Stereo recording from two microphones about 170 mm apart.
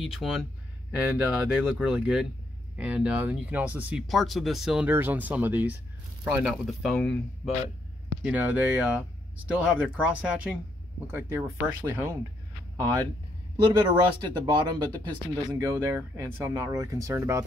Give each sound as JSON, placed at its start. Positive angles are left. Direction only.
{"t": 0.0, "sound": "speech", "side_deg": 0}
{"t": 8.2, "sound": "speech", "side_deg": -10}
{"t": 13.6, "sound": "speech", "side_deg": -25}